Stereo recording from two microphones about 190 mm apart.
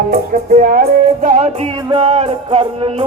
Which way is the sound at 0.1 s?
50° right (ahead or behind).